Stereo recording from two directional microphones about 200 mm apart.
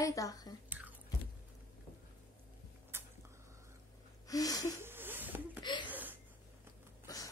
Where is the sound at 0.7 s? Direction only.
10° right (ahead or behind).